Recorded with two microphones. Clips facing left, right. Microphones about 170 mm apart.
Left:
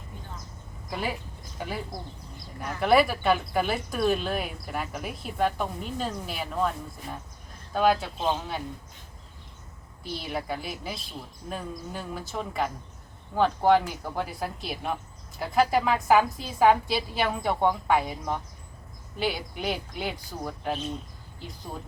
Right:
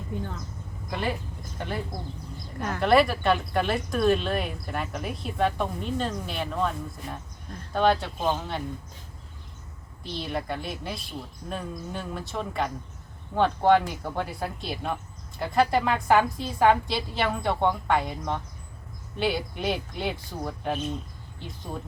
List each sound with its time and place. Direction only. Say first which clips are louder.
0.9 s speech: right 2 dB; 5° left (ahead or behind)
2.6 s speech: right 4 dB; 75° right (ahead or behind)
2.8 s speech: right 1 dB; centre (ahead or behind)
10.0 s speech: right 1 dB; 5° left (ahead or behind)